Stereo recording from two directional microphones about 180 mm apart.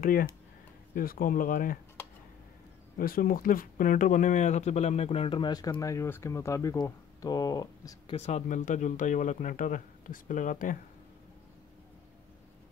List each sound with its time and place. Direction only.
0.0 s speech: 55° left (ahead or behind)
3.0 s speech: 50° left (ahead or behind); by 8.2 s 20° left (ahead or behind)
8.2 s speech: 40° left (ahead or behind)